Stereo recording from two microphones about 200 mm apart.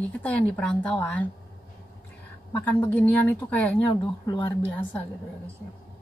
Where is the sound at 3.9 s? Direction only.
20° left (ahead or behind).